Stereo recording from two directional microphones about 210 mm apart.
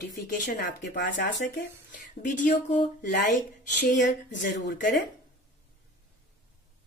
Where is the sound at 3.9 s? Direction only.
55° left (ahead or behind).